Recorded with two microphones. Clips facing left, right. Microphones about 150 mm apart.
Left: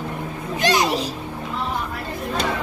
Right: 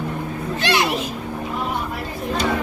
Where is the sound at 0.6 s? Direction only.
40° left (ahead or behind).